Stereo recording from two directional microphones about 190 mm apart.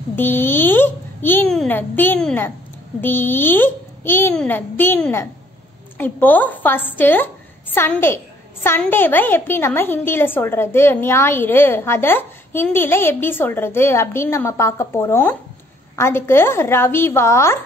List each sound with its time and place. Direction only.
0.1 s a woman's voice: 10° left (ahead or behind)